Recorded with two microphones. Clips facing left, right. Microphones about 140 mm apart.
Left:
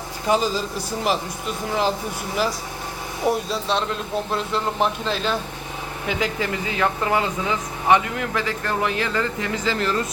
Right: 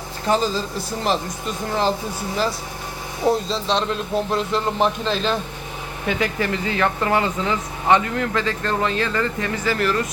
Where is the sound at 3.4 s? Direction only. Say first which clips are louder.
Right 1 dB; 25° right (ahead or behind).